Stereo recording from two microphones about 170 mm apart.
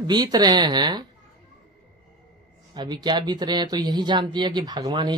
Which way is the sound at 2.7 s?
25° right (ahead or behind).